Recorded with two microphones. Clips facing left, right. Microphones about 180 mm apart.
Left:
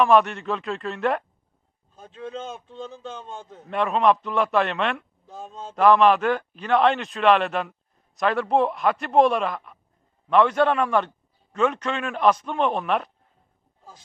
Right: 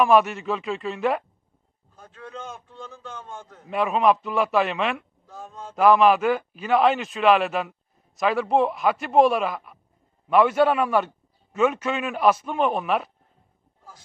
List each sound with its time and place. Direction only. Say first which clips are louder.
0.0 s a man's voice: even; 5° right (ahead or behind)
2.0 s a man's voice: left 5 dB; 25° left (ahead or behind)
3.7 s a man's voice: even; 5° right (ahead or behind)
5.2 s speech: left 2 dB; 25° left (ahead or behind)
5.7 s a man's voice: even; 5° right (ahead or behind)